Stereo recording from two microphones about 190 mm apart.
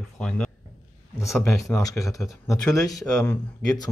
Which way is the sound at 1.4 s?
15° left (ahead or behind).